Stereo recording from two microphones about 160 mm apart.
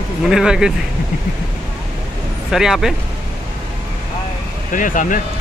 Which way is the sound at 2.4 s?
Centre (ahead or behind).